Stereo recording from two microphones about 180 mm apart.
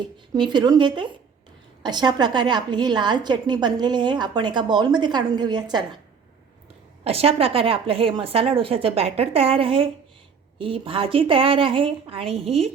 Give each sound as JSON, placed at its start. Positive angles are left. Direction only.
{"t": 0.3, "sound": "a woman's voice", "side_deg": -25}
{"t": 7.0, "sound": "a woman's voice", "side_deg": -35}